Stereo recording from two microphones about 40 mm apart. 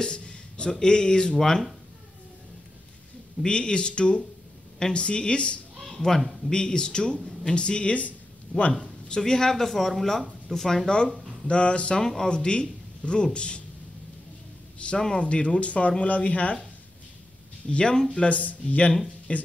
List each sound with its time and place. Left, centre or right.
0.0 s speech: left
3.4 s speech: left
5.8 s speech: centre; by 8.6 s left
9.1 s speech: centre
11.4 s speech: left
12.0 s speech: centre
15.0 s speech: centre
15.2 s speech: left
17.6 s speech: left